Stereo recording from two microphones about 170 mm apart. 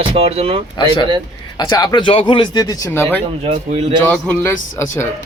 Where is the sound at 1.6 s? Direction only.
20° left (ahead or behind).